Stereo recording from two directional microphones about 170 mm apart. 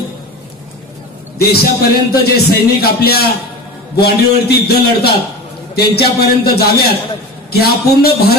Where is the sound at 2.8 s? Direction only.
65° left (ahead or behind).